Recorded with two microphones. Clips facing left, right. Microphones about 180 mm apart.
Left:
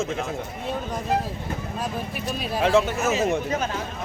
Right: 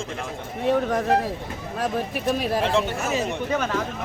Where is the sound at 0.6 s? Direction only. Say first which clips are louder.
Right 10 dB; 85° right.